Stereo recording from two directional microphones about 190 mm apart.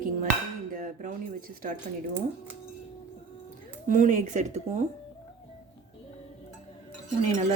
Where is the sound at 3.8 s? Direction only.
45° right (ahead or behind).